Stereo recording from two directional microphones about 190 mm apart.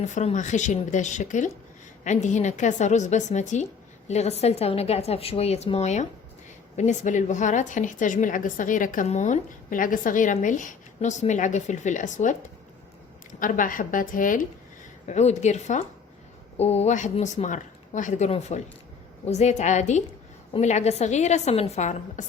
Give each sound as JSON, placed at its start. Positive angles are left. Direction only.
{"t": 0.0, "sound": "a woman's voice", "side_deg": 40}
{"t": 13.4, "sound": "a woman's voice", "side_deg": 45}